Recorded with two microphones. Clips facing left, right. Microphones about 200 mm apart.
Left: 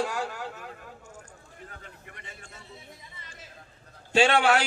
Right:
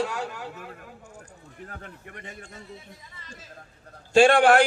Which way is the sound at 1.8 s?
55° right (ahead or behind).